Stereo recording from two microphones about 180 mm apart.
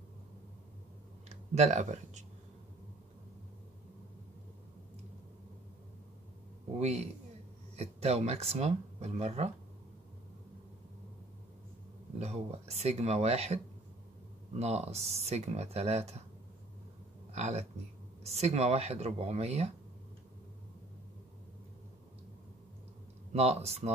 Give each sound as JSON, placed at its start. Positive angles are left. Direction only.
{"t": 1.3, "sound": "speech", "side_deg": -40}
{"t": 6.8, "sound": "speech", "side_deg": -35}
{"t": 12.2, "sound": "speech", "side_deg": -35}
{"t": 14.6, "sound": "speech", "side_deg": -35}
{"t": 17.3, "sound": "speech", "side_deg": -35}
{"t": 23.3, "sound": "speech", "side_deg": -35}